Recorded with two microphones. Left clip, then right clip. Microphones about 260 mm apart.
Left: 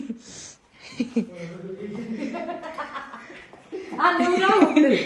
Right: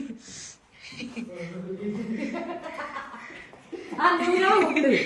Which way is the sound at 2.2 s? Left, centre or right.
Centre.